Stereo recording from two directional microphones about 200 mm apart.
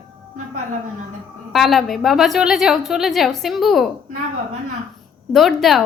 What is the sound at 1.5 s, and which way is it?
A woman's voice, centre (ahead or behind).